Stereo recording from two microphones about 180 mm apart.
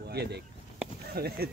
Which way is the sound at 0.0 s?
65° right (ahead or behind).